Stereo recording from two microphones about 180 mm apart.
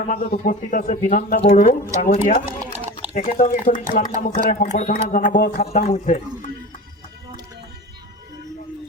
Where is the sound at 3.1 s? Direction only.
45° left (ahead or behind).